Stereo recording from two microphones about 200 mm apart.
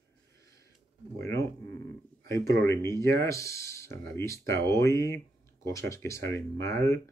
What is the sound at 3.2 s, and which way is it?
Speech, 15° left (ahead or behind).